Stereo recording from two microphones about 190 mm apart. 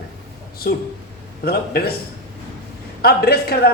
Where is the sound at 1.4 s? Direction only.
55° left (ahead or behind).